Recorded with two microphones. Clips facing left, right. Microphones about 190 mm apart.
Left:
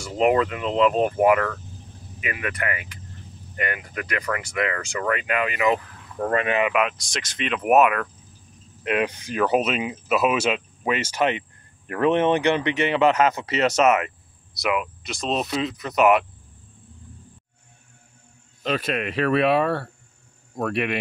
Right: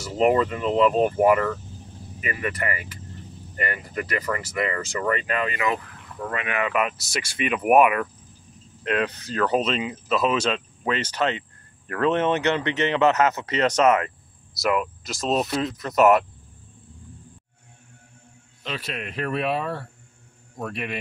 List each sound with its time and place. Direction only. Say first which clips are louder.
0.0 s speech: even; centre (ahead or behind); by 5.8 s 15° left (ahead or behind)
6.1 s speech: left 7 dB; 50° left (ahead or behind)
6.7 s speech: left 1 dB; centre (ahead or behind)
8.8 s speech: left 1 dB; 15° left (ahead or behind)
13.8 s cricket: even; 25° left (ahead or behind)
14.5 s speech: right 1 dB; centre (ahead or behind)
18.6 s speech: left 7 dB; 50° left (ahead or behind)
19.0 s speech: left 5 dB; 90° left